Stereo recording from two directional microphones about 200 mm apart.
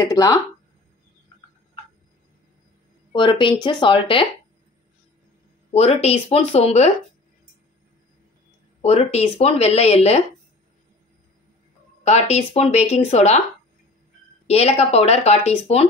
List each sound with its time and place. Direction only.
0.0 s speech: 20° left (ahead or behind)
3.1 s speech: 25° left (ahead or behind)
5.7 s speech: 30° left (ahead or behind)
8.8 s speech: 30° left (ahead or behind)
12.0 s speech: 35° left (ahead or behind)
14.5 s speech: 30° left (ahead or behind)